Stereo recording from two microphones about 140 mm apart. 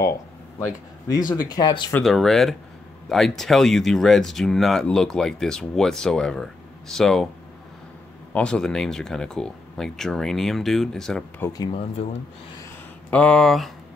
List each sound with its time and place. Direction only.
0.6 s speech: 25° left (ahead or behind)
2.0 s speech: centre (ahead or behind)
8.3 s speech: 10° left (ahead or behind)
11.4 s speech: 25° left (ahead or behind)
13.1 s speech: 5° left (ahead or behind)